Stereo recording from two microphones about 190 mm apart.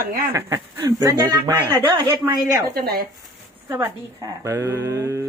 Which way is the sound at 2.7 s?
55° right (ahead or behind).